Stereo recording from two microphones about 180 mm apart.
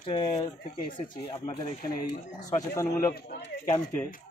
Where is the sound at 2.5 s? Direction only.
20° left (ahead or behind).